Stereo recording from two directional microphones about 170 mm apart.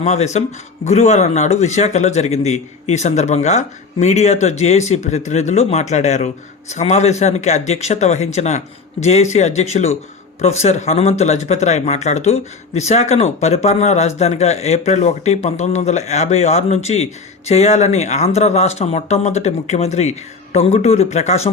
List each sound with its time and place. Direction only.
0.0 s a man's voice: 40° left (ahead or behind)